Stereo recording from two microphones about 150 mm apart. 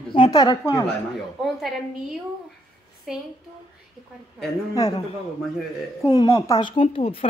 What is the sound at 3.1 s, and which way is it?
Speech, centre (ahead or behind).